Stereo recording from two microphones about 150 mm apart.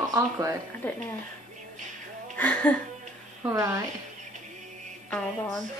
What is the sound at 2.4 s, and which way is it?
Speech, 10° left (ahead or behind).